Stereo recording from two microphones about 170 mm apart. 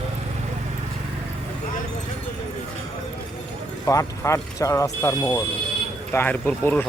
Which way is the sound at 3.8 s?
15° left (ahead or behind).